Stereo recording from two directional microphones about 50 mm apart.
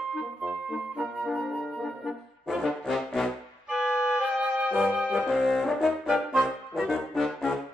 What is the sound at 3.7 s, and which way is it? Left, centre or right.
Music, centre.